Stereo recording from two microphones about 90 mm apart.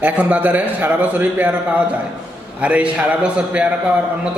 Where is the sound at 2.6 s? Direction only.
15° right (ahead or behind).